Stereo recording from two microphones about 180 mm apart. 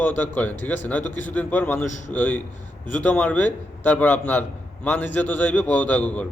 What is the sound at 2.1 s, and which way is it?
A man's voice, 10° left (ahead or behind).